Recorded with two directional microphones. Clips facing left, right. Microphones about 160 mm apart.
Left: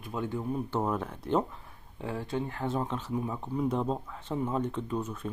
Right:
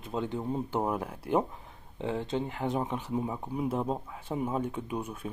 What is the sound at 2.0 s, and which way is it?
Speech, 20° right (ahead or behind).